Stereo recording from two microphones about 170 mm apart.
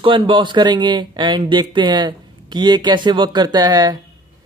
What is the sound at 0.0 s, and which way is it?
A man's voice, 30° right (ahead or behind).